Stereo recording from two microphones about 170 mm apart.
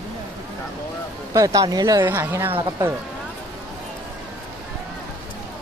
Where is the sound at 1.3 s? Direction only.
20° right (ahead or behind).